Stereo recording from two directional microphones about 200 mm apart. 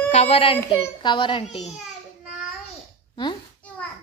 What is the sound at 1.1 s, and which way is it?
Speech, 25° left (ahead or behind).